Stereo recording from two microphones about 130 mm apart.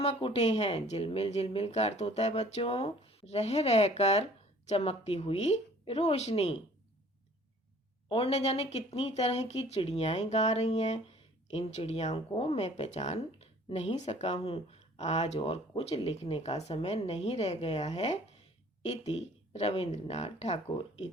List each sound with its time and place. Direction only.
0.0 s a woman's voice: 50° left (ahead or behind)
8.1 s a woman's voice: 50° left (ahead or behind)
12.1 s a woman's voice: 45° left (ahead or behind)
15.4 s a woman's voice: 45° left (ahead or behind)